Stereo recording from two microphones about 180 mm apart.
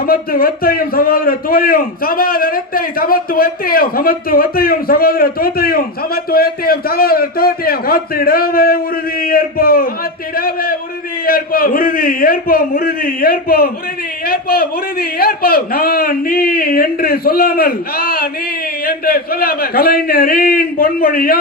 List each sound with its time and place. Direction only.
0.0 s a man's voice: 55° left (ahead or behind)